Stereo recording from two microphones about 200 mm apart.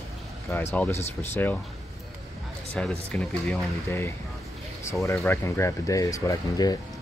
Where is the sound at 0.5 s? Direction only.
10° left (ahead or behind).